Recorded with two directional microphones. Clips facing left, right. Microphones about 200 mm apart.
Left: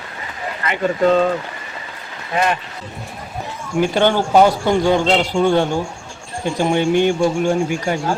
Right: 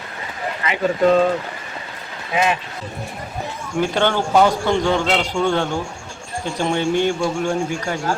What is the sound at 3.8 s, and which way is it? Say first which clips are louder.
Speech: left 3 dB; 15° left (ahead or behind).